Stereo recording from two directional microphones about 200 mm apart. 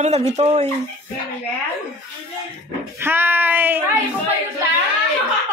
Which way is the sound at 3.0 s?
10° right (ahead or behind).